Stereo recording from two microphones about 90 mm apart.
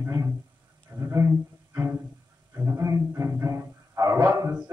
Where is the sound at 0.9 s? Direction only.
20° right (ahead or behind).